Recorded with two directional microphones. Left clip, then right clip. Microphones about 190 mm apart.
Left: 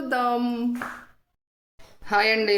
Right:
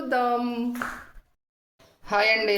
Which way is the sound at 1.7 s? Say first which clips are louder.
Left 2 dB; 20° left (ahead or behind).